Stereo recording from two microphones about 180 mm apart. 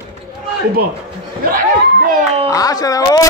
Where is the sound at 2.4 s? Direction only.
20° left (ahead or behind).